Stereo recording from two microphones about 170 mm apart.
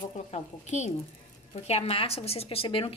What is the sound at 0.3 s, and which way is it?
A woman's voice, 40° left (ahead or behind).